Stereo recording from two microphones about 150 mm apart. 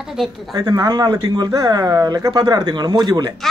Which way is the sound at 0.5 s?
25° right (ahead or behind).